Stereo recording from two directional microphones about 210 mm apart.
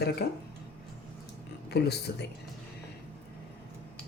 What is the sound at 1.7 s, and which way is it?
Speech, 50° left (ahead or behind).